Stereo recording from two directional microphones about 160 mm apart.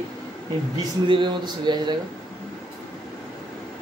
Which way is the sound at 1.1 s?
30° right (ahead or behind).